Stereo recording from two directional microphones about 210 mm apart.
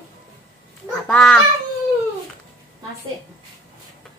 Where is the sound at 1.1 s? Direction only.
5° left (ahead or behind).